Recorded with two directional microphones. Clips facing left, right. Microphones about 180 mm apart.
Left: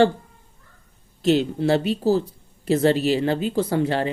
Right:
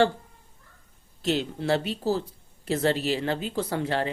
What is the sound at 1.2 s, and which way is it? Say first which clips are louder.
Speech: left 8 dB; 15° left (ahead or behind).